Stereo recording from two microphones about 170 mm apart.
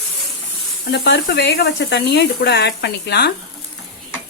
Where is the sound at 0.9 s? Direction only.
80° left.